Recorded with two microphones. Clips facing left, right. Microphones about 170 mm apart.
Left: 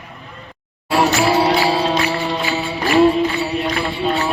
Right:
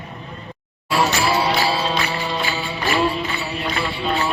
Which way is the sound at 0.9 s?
50° left (ahead or behind).